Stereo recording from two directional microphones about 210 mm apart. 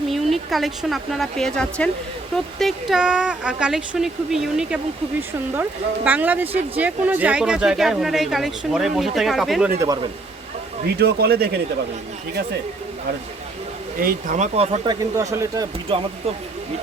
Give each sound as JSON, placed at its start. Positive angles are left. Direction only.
{"t": 0.1, "sound": "speech", "side_deg": 0}
{"t": 6.1, "sound": "speech", "side_deg": -10}
{"t": 9.8, "sound": "speech", "side_deg": -15}
{"t": 10.9, "sound": "speech", "side_deg": -50}
{"t": 14.0, "sound": "speech", "side_deg": -40}
{"t": 15.9, "sound": "speech", "side_deg": -25}